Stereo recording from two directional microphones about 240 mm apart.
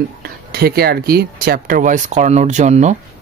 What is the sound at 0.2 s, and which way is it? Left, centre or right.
Speech, right.